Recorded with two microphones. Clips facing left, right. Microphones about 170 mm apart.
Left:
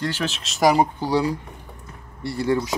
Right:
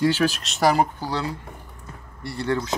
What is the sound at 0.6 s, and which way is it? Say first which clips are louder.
Speech: left 2 dB; 15° left (ahead or behind).